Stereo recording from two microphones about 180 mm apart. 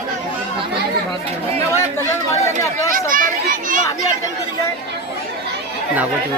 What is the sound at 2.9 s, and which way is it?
Speech, 50° right (ahead or behind).